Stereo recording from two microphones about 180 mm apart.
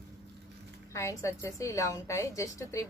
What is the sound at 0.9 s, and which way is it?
A woman's voice, 15° left (ahead or behind).